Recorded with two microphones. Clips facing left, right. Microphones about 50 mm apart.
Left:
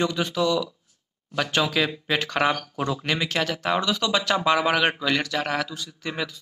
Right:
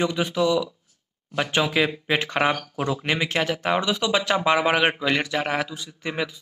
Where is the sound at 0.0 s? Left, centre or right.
Centre.